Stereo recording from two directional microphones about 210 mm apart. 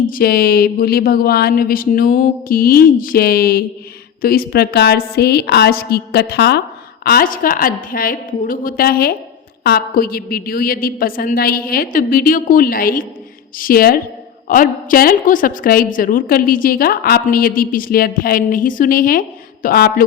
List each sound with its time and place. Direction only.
0.1 s a woman's voice: 45° left (ahead or behind)